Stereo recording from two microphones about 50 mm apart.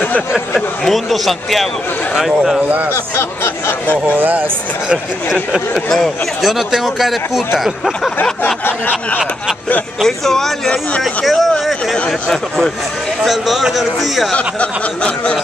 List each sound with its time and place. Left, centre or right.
0.6 s speech: centre
2.9 s speech: left
4.2 s speech: right
6.4 s speech: centre
8.6 s snicker: left
10.0 s speech: centre
13.2 s speech: centre
14.3 s speech: left